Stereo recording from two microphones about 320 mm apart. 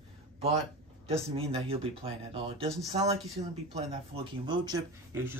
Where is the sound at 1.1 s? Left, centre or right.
Centre.